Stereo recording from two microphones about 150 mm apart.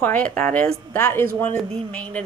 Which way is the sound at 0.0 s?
10° left (ahead or behind).